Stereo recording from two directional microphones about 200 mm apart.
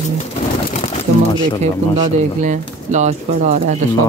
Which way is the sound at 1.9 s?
35° right (ahead or behind).